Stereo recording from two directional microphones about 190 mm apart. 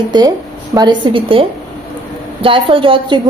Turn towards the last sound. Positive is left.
turn(degrees=-25)  # may be behind; listen again after turning